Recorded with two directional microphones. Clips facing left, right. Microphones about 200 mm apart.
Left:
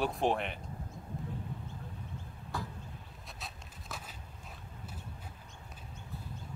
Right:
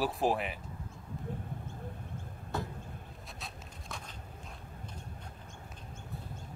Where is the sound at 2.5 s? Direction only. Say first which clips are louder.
Right 3 dB; 25° right (ahead or behind).